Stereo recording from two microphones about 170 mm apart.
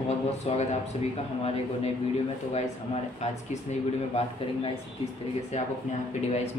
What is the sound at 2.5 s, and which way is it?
A man's voice, 40° left (ahead or behind).